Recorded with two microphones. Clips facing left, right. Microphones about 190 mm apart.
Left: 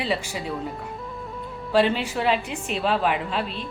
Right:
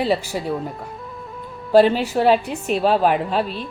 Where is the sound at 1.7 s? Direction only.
40° right (ahead or behind).